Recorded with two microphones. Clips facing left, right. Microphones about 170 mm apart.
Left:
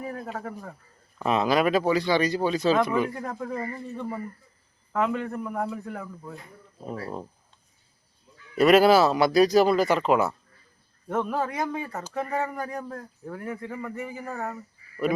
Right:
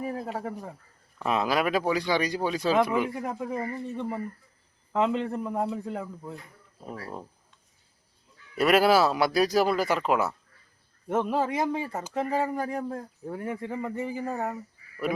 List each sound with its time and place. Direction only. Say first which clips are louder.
0.0 s a sound: right 2 dB; 25° right (ahead or behind)
1.2 s speech: left 3 dB; 5° right (ahead or behind); by 6.3 s 20° right (ahead or behind)
6.8 s speech: left 4 dB; 25° left (ahead or behind)
8.5 s speech: left 4 dB; 5° right (ahead or behind)
11.1 s speech: right 1 dB; 25° right (ahead or behind)